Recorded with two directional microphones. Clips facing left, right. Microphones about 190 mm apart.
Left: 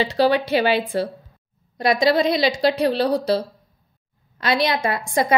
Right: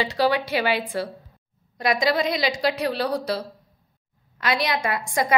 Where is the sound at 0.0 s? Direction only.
25° left (ahead or behind).